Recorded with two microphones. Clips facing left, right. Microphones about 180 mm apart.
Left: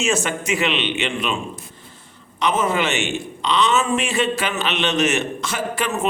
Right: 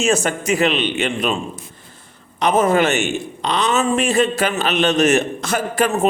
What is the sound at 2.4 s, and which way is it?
A man's voice, 40° right (ahead or behind).